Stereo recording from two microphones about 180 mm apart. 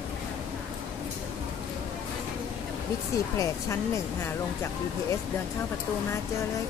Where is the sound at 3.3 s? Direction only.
15° left (ahead or behind).